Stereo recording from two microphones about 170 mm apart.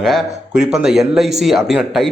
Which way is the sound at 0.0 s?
Centre (ahead or behind).